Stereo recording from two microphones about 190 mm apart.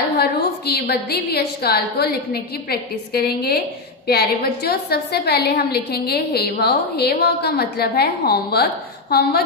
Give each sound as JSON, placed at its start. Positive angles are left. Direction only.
{"t": 0.2, "sound": "a woman's voice", "side_deg": 60}